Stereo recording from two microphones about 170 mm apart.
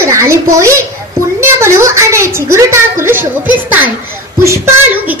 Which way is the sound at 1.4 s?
15° right (ahead or behind).